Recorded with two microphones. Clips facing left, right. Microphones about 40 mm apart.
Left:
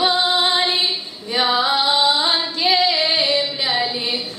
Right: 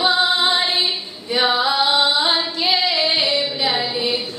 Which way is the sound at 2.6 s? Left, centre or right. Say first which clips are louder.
Left 1 dB; left.